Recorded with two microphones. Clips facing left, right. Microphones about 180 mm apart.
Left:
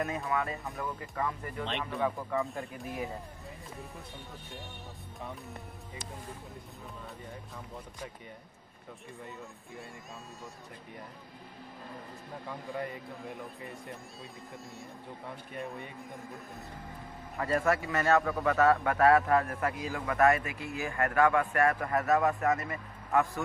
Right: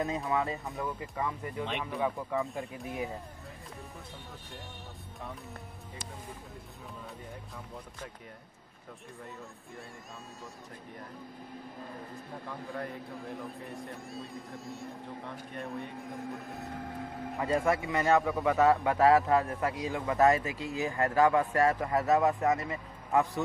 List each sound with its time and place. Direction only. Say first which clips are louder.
0.3 s speech: right 2 dB; 20° right (ahead or behind); by 2.7 s centre (ahead or behind)
2.8 s speech: right 1 dB; 15° right (ahead or behind)
12.7 s speech: left 1 dB; centre (ahead or behind)
16.5 s a sound: right 6 dB; 90° right
17.4 s a man's voice: even; 15° right (ahead or behind)